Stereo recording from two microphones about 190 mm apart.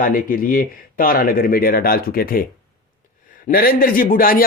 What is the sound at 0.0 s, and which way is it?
Speech, 45° left (ahead or behind).